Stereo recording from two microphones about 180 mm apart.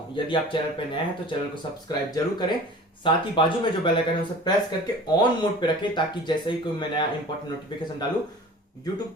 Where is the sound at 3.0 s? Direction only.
30° left (ahead or behind).